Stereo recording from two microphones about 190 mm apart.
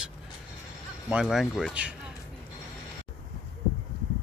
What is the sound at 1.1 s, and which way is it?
Speech, centre (ahead or behind).